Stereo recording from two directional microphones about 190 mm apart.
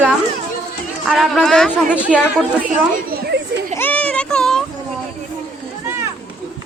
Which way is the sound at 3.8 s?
10° left (ahead or behind).